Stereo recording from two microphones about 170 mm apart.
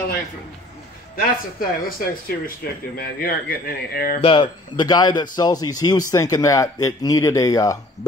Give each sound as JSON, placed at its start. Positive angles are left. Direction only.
{"t": 1.1, "sound": "speech", "side_deg": 60}
{"t": 4.2, "sound": "speech", "side_deg": 30}